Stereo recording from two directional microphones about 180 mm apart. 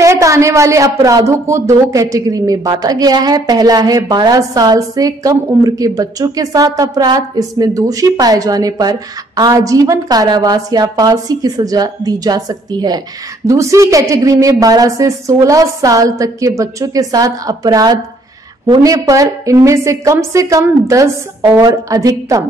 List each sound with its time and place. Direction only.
0.0 s a woman's voice: 15° right (ahead or behind)